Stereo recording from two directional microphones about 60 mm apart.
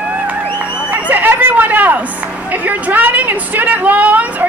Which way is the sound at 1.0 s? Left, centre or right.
Right.